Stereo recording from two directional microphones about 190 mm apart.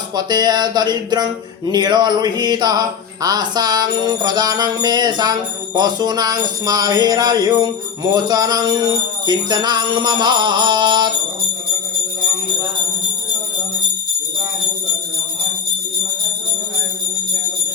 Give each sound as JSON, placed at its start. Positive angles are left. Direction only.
{"t": 0.2, "sound": "music", "side_deg": -20}